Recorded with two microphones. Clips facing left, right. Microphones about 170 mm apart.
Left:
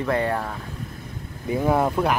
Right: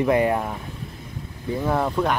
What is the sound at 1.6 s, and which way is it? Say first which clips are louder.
Speech: left 2 dB; 10° left (ahead or behind).